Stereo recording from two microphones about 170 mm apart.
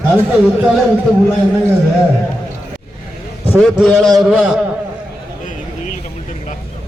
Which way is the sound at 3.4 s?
10° left (ahead or behind).